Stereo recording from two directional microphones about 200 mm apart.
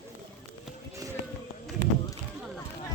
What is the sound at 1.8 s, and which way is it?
Run, 65° right (ahead or behind).